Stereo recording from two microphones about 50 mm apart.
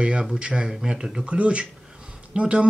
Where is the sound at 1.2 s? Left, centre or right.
Right.